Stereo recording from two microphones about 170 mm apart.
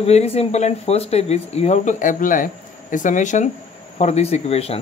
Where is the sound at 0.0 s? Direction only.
35° left (ahead or behind).